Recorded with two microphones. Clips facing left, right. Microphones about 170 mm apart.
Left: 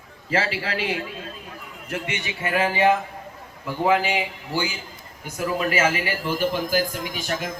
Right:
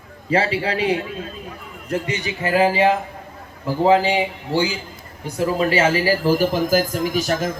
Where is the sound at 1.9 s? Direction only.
35° right (ahead or behind).